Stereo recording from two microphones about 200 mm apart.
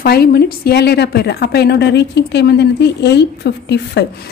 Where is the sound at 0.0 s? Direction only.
50° left (ahead or behind).